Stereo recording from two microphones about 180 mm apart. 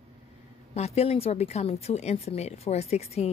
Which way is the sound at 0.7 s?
35° left (ahead or behind).